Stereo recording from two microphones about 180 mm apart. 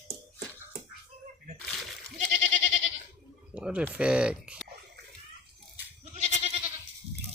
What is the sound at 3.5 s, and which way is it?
Speech, 5° right (ahead or behind).